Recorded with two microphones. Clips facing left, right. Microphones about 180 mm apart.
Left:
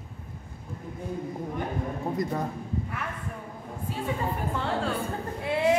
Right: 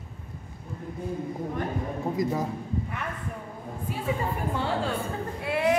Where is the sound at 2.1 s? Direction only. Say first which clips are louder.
Right 2 dB; centre (ahead or behind).